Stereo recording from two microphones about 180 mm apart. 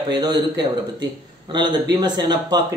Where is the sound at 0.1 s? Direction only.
25° right (ahead or behind).